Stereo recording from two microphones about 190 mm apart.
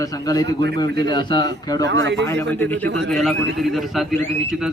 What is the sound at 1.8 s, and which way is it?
Speech, 70° right (ahead or behind).